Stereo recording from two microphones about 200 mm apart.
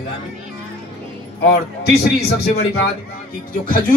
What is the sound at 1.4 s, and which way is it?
A man's voice, 55° left (ahead or behind).